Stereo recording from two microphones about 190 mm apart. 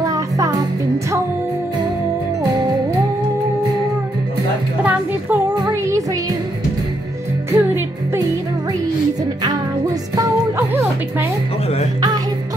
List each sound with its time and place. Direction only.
0.0 s music: 20° right (ahead or behind)
4.8 s music: 10° right (ahead or behind)
7.5 s music: 15° right (ahead or behind)
10.7 s music: 10° right (ahead or behind)